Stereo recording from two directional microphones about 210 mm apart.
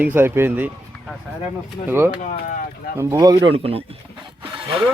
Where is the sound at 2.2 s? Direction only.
40° left (ahead or behind).